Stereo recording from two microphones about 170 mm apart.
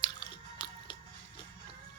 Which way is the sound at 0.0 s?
25° left (ahead or behind).